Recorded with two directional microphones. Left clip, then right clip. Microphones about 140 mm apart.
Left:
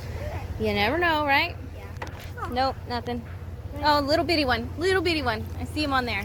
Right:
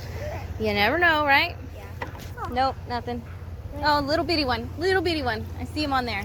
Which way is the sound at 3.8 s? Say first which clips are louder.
Left 1 dB; 20° left (ahead or behind).